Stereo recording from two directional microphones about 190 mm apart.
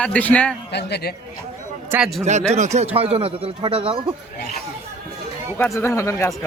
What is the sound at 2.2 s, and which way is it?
A man's voice, 35° right (ahead or behind).